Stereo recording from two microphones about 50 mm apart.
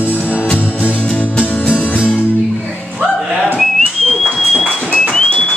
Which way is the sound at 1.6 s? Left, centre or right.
Left.